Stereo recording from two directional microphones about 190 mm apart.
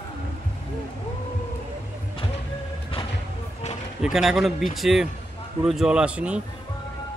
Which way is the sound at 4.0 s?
Centre (ahead or behind).